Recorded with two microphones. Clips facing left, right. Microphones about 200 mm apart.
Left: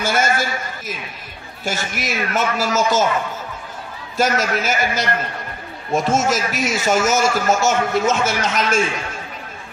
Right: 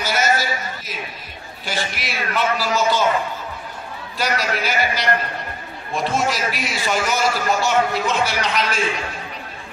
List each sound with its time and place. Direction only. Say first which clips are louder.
0.0 s a sound: left 1 dB; 50° left (ahead or behind)
1.6 s speech: left 2 dB; 45° left (ahead or behind)
4.2 s speech: left 4 dB; 45° left (ahead or behind)